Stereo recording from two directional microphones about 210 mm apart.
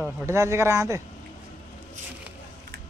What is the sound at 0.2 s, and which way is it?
Speech, 15° right (ahead or behind).